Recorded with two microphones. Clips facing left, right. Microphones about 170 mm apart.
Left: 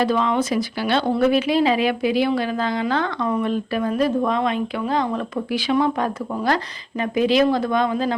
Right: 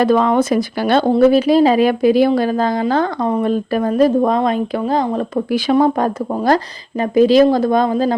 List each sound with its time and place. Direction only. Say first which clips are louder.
0.0 s a woman's voice: right 6 dB; 50° right (ahead or behind)